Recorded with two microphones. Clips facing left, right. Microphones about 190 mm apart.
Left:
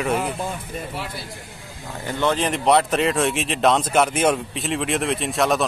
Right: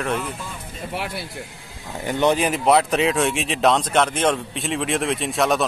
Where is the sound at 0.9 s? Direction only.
65° right (ahead or behind).